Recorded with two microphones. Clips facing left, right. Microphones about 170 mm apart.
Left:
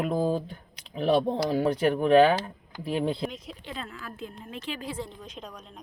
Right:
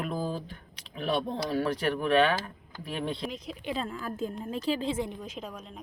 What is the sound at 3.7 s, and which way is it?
A woman's voice, 35° right (ahead or behind).